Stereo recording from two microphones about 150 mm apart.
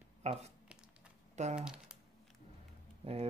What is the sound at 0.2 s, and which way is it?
Speech, 45° right (ahead or behind).